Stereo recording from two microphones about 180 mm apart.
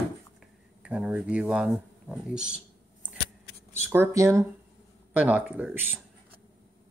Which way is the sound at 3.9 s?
15° right (ahead or behind).